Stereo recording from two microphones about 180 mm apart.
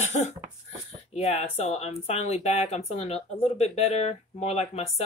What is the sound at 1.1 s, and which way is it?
Speech, 35° left (ahead or behind).